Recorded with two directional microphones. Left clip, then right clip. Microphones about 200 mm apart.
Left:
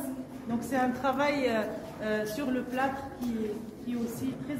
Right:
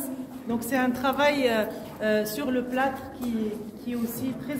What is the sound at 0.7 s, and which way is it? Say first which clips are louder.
Speech: right 3 dB; 40° right (ahead or behind).